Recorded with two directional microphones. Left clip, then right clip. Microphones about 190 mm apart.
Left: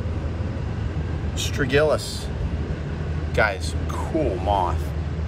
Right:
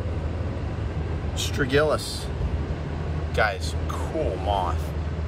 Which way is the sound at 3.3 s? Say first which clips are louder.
Left 2 dB; 15° right (ahead or behind).